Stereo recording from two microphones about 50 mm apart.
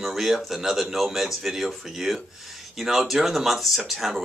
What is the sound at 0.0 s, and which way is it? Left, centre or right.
Speech, centre.